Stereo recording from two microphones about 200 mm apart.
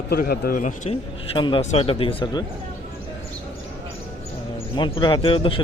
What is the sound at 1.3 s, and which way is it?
A man's voice, 25° left (ahead or behind).